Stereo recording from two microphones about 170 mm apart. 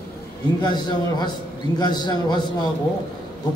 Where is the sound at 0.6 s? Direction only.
25° left (ahead or behind).